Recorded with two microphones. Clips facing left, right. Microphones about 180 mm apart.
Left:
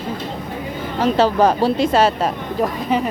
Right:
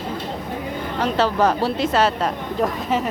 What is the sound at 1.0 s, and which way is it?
Speech, 10° left (ahead or behind).